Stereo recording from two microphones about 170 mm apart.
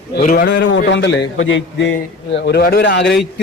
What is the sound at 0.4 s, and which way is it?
A man's voice, 90° left.